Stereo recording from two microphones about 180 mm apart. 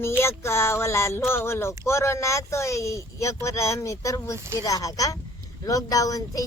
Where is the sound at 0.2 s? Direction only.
15° left (ahead or behind).